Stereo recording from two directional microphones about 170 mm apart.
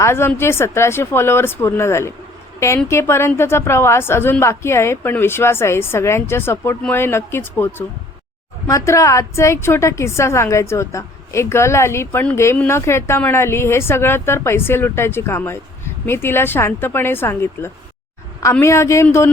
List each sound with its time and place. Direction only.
0.0 s a woman's voice: 15° left (ahead or behind)